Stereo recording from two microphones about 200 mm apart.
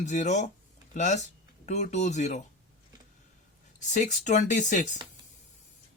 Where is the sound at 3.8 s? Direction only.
40° left (ahead or behind).